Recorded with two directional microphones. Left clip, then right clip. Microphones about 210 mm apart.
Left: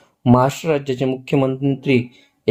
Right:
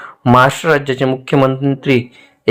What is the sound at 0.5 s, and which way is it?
A man's voice, centre (ahead or behind).